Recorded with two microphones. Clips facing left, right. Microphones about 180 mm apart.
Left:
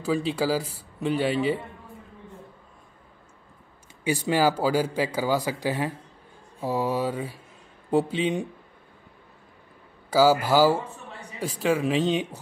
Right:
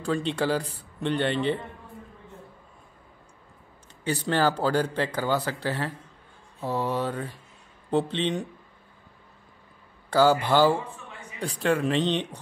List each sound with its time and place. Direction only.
0.0 s a man's voice: 5° left (ahead or behind)
4.0 s speech: 10° left (ahead or behind)
10.0 s a man's voice: 5° left (ahead or behind)
10.8 s a sound: 40° left (ahead or behind)
11.6 s a man's voice: centre (ahead or behind)